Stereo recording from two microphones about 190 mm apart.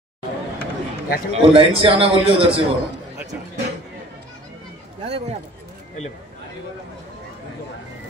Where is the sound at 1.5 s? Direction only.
30° right (ahead or behind).